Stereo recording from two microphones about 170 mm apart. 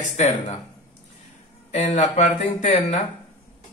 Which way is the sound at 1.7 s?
40° left (ahead or behind).